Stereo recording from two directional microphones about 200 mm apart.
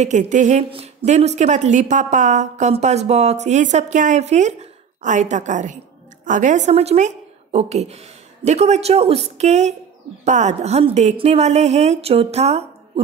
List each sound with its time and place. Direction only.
0.0 s a woman's voice: 35° right (ahead or behind)